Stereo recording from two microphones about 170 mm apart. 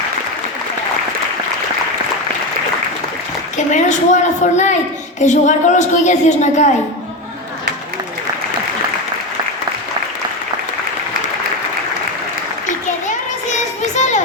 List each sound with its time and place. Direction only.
3.7 s a woman's voice: 45° left (ahead or behind)
12.6 s children playing: 45° left (ahead or behind)